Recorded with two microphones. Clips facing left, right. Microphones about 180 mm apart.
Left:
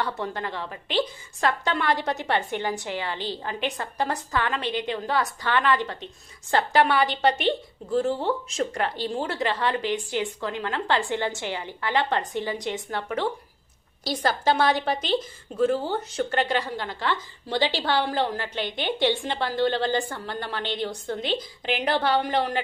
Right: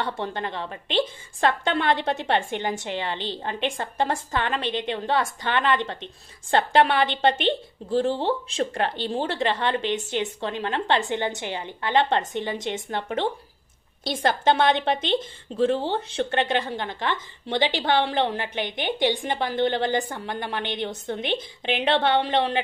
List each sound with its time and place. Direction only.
0.0 s a woman's voice: 25° right (ahead or behind)